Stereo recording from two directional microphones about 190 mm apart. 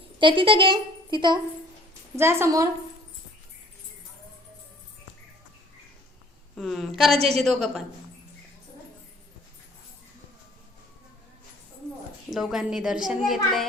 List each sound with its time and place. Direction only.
0.2 s speech: 25° right (ahead or behind)
2.1 s a woman's voice: 15° right (ahead or behind)
6.6 s a woman's voice: centre (ahead or behind)
12.3 s a woman's voice: centre (ahead or behind)